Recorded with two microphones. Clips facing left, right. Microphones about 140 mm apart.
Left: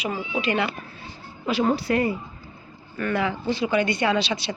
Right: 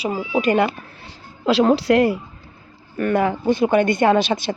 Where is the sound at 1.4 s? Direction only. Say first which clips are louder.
Right 7 dB; 90° right.